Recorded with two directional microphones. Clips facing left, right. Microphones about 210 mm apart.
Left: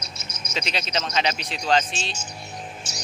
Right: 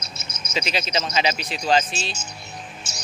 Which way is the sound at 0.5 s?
5° right (ahead or behind).